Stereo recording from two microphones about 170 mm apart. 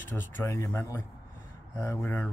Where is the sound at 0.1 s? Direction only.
15° left (ahead or behind).